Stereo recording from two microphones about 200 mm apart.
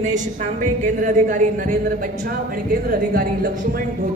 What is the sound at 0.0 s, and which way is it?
A woman's voice, 40° right (ahead or behind).